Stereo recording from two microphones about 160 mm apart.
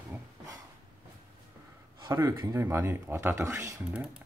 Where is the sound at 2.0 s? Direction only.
25° right (ahead or behind).